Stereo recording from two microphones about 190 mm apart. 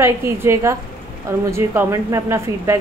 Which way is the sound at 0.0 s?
15° right (ahead or behind).